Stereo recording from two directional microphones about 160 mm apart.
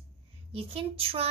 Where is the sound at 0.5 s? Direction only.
35° right (ahead or behind).